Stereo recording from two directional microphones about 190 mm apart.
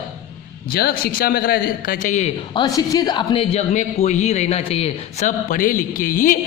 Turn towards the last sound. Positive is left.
turn(degrees=45)  # may be behind; listen again after turning